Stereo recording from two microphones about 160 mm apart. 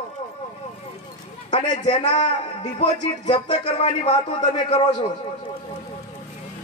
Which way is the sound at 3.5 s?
35° left (ahead or behind).